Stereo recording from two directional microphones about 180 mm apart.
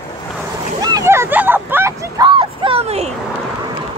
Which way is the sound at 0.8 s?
20° right (ahead or behind).